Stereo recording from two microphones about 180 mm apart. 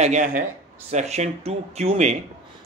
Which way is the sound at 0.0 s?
40° right (ahead or behind).